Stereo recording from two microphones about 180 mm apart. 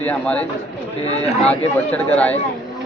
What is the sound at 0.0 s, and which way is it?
Speech, 10° left (ahead or behind).